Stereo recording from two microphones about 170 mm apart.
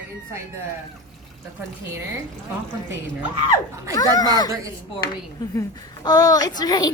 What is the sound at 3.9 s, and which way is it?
A woman's voice, 20° left (ahead or behind).